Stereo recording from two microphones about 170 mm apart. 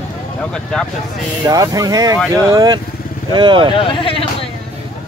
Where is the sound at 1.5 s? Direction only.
20° right (ahead or behind).